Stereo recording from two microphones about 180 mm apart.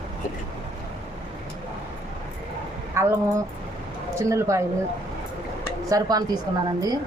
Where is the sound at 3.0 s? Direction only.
15° right (ahead or behind).